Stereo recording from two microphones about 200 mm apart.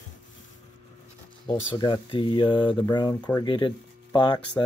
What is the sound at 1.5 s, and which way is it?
Speech, 20° left (ahead or behind).